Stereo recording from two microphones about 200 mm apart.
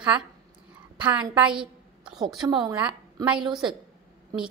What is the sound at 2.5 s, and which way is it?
Speech, 25° right (ahead or behind).